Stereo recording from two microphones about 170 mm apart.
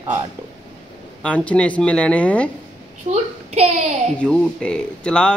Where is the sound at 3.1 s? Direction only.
40° right (ahead or behind).